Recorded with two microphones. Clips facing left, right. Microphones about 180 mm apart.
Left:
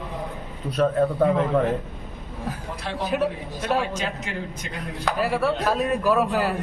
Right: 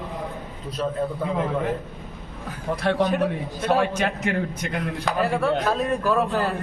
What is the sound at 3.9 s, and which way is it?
Speech, 60° right (ahead or behind).